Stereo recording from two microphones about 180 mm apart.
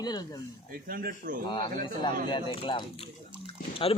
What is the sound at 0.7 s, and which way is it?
Speech, 55° right (ahead or behind).